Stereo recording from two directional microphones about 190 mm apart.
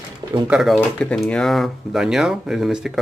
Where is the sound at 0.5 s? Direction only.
Centre (ahead or behind).